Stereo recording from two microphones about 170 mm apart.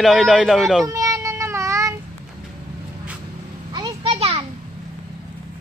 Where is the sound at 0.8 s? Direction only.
20° right (ahead or behind).